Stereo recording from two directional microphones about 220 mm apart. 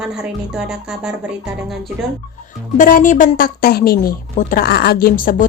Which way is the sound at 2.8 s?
35° left (ahead or behind).